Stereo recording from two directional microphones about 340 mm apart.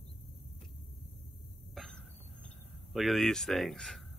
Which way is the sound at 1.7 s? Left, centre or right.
Centre.